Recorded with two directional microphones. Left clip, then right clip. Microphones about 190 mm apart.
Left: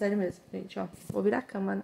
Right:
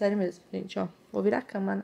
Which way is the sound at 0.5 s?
40° right (ahead or behind).